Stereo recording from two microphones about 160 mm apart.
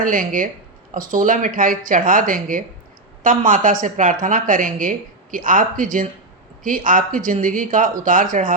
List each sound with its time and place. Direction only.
0.0 s speech: 60° right (ahead or behind)